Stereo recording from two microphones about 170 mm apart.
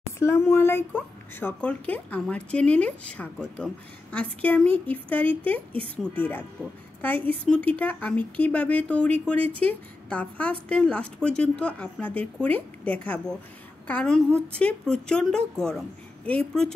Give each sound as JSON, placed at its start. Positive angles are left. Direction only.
{"t": 0.2, "sound": "speech", "side_deg": 15}
{"t": 5.7, "sound": "speech", "side_deg": -30}
{"t": 6.6, "sound": "a woman's voice", "side_deg": 5}